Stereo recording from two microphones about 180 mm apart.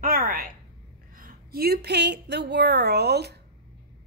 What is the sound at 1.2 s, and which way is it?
A woman's voice, 55° right (ahead or behind).